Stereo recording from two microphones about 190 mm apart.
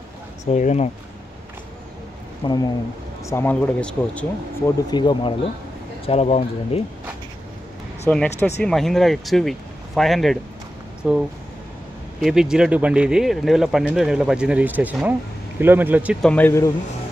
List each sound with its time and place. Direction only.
0.5 s speech: 35° left (ahead or behind)
2.4 s speech: 20° left (ahead or behind)
3.3 s speech: 10° left (ahead or behind)
4.9 s speech: 25° left (ahead or behind)
8.1 s speech: 10° left (ahead or behind); by 16.2 s 10° right (ahead or behind)
16.2 s speech: 5° left (ahead or behind)